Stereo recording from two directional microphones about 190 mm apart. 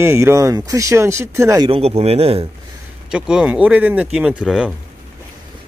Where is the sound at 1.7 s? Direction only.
30° right (ahead or behind).